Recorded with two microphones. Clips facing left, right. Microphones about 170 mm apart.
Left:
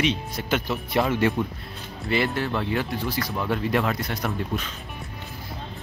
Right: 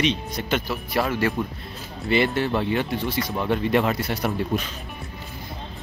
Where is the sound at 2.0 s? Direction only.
Centre (ahead or behind).